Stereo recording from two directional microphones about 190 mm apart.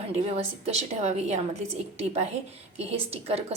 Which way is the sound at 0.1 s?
35° right (ahead or behind).